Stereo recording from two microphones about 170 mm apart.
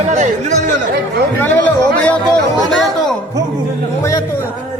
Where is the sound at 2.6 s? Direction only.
Centre (ahead or behind).